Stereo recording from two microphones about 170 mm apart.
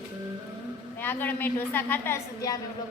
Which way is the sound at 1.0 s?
10° left (ahead or behind).